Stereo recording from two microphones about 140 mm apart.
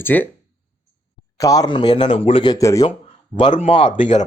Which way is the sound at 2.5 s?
25° left (ahead or behind).